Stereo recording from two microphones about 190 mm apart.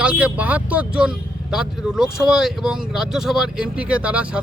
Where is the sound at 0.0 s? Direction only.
5° right (ahead or behind).